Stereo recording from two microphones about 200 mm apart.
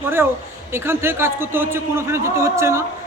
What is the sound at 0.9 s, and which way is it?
A man's voice, 10° right (ahead or behind).